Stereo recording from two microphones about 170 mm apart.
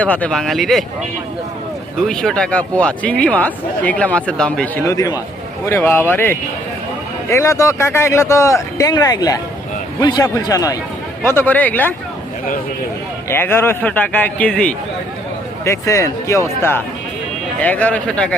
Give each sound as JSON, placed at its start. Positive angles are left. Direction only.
{"t": 0.0, "sound": "speech", "side_deg": 10}
{"t": 2.0, "sound": "a man's voice", "side_deg": 5}
{"t": 13.3, "sound": "speech", "side_deg": 15}
{"t": 15.6, "sound": "speech", "side_deg": 15}